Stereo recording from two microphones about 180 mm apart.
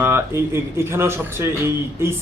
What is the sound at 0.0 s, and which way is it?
A man's voice, 15° right (ahead or behind).